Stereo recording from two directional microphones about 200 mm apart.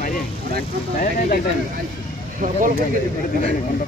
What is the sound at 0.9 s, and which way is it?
Speech, 45° left (ahead or behind).